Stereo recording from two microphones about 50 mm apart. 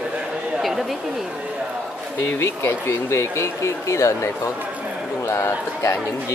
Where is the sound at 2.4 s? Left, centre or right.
Left.